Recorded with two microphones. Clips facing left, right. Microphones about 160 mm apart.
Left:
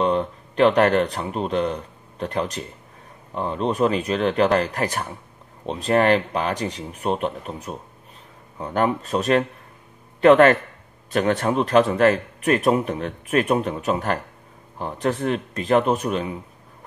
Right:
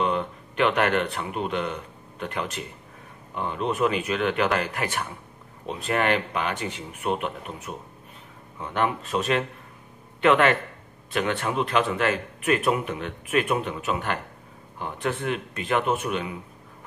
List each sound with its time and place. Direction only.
0.0 s a man's voice: 35° left (ahead or behind)